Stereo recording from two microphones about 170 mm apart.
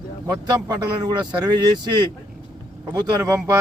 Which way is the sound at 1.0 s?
25° right (ahead or behind).